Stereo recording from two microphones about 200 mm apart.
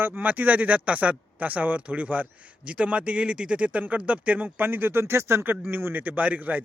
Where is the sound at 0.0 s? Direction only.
10° right (ahead or behind).